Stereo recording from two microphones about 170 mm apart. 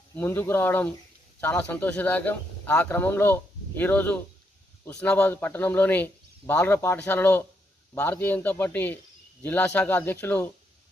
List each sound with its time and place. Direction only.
0.1 s speech: 15° left (ahead or behind)